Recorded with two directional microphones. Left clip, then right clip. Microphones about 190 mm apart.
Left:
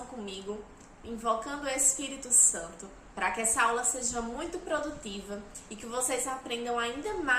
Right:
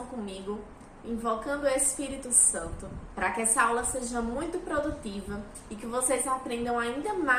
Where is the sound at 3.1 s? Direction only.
20° left (ahead or behind).